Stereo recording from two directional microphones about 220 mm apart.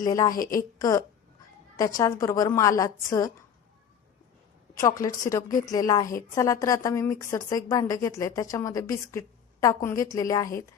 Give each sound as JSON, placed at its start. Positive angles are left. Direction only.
{"t": 0.0, "sound": "a woman's voice", "side_deg": 15}
{"t": 0.3, "sound": "a woman's voice", "side_deg": 40}
{"t": 0.8, "sound": "a woman's voice", "side_deg": 15}
{"t": 4.9, "sound": "a woman's voice", "side_deg": 15}